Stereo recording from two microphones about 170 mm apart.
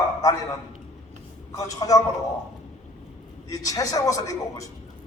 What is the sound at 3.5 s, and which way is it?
A man's voice, 20° left (ahead or behind).